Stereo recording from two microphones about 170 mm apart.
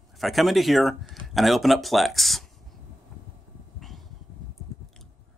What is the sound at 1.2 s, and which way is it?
Speech, centre (ahead or behind).